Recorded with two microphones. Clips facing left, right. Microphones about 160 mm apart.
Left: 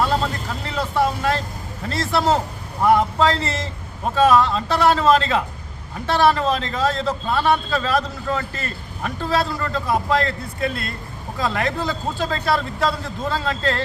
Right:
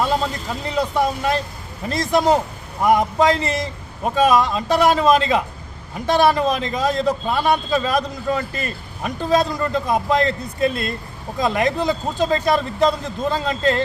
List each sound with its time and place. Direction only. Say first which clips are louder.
0.6 s a man's voice: right 1 dB; 15° right (ahead or behind)